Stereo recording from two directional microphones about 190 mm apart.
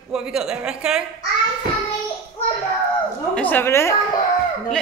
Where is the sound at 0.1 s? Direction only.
5° right (ahead or behind).